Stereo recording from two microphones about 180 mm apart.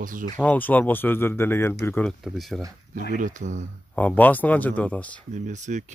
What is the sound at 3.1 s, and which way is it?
Speech, 45° right (ahead or behind).